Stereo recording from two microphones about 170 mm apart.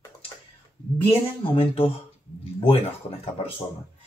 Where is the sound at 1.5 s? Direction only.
35° left (ahead or behind).